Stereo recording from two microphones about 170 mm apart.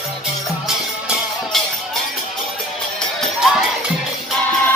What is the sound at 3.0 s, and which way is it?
Music, centre (ahead or behind).